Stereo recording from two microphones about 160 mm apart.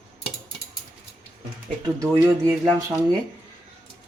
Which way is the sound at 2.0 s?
20° right (ahead or behind).